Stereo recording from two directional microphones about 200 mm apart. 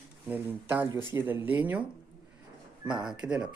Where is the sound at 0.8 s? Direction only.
20° left (ahead or behind).